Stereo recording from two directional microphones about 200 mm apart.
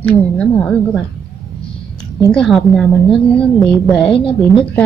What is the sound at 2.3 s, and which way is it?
A woman's voice, centre (ahead or behind).